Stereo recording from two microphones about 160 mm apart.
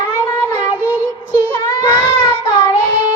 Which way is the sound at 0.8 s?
10° right (ahead or behind).